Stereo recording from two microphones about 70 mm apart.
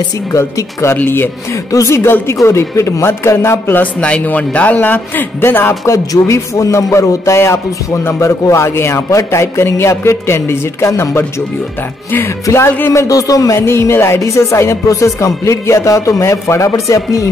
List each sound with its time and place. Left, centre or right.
0.3 s speech: left
0.9 s speech: left
1.7 s speech: left
3.7 s a man's voice: centre
5.9 s speech: left
12.4 s speech: left
13.6 s speech: left